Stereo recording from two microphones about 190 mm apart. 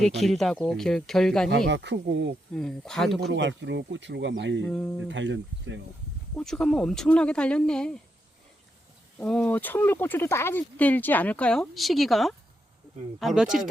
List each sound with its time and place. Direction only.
0.0 s speech: centre (ahead or behind)
1.5 s speech: 65° right (ahead or behind)
2.5 s speech: 5° left (ahead or behind)
3.2 s speech: 65° right (ahead or behind)
4.6 s speech: 5° left (ahead or behind)
5.0 s speech: 75° right (ahead or behind)
6.3 s speech: 5° left (ahead or behind)
9.1 s speech: 5° left (ahead or behind)